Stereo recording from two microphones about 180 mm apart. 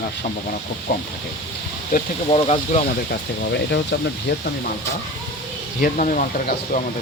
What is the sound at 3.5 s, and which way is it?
Speech, 70° left (ahead or behind).